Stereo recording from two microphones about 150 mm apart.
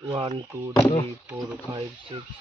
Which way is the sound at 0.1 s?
40° right (ahead or behind).